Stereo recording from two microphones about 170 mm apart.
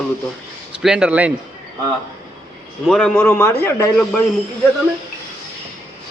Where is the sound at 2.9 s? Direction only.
5° left (ahead or behind).